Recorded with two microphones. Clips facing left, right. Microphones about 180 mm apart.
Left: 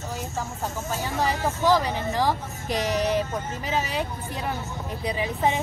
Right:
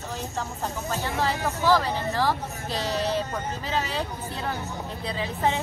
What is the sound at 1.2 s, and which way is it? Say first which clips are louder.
Speech: left 2 dB; 15° left (ahead or behind).